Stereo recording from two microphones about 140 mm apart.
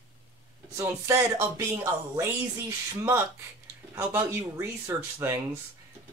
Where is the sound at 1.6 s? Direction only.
20° right (ahead or behind).